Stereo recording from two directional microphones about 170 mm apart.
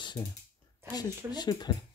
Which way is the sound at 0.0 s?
25° left (ahead or behind).